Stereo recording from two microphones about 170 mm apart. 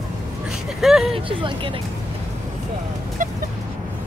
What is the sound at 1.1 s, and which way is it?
Speech, 30° right (ahead or behind).